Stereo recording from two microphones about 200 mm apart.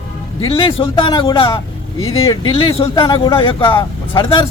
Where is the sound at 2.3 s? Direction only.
25° left (ahead or behind).